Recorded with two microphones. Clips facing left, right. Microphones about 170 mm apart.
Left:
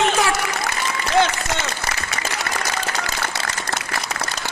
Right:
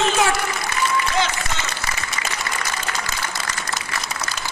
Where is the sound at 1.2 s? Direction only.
70° left (ahead or behind).